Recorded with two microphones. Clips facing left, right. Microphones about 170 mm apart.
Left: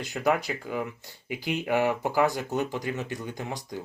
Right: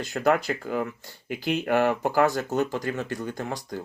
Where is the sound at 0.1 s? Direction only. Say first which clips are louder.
Right 3 dB; centre (ahead or behind).